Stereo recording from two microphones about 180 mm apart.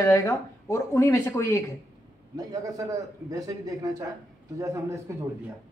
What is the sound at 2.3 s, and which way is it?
A man's voice, 20° right (ahead or behind).